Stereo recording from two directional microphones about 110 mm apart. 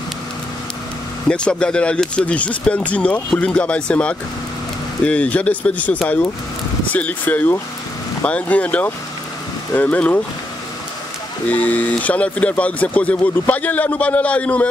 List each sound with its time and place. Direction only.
1.3 s speech: 10° left (ahead or behind)
11.4 s speech: 15° left (ahead or behind)